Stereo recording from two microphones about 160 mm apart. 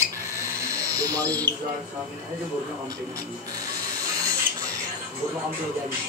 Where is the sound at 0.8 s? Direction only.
20° right (ahead or behind).